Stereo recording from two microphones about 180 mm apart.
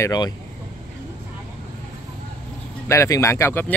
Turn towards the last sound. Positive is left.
turn(degrees=15)  # may be behind; listen again after turning